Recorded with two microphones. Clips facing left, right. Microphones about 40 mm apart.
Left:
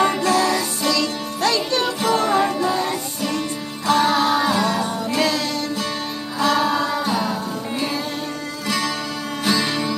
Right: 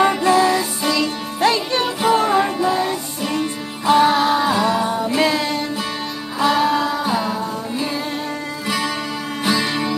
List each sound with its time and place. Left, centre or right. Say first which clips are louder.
0.0 s music: right 3 dB; centre
6.4 s music: right 2 dB; centre
8.6 s music: right 1 dB; centre